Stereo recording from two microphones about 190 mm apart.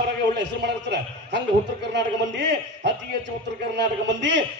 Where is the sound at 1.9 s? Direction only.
65° right (ahead or behind).